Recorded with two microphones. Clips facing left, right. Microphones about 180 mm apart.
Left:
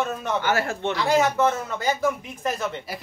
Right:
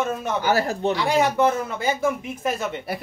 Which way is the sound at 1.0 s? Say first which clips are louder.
Even; 15° right (ahead or behind).